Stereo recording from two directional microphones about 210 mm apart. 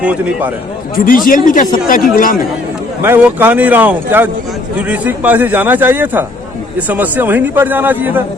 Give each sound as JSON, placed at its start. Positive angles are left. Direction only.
{"t": 0.0, "sound": "a man's voice", "side_deg": -5}
{"t": 0.9, "sound": "speech", "side_deg": 40}
{"t": 3.0, "sound": "a man's voice", "side_deg": -10}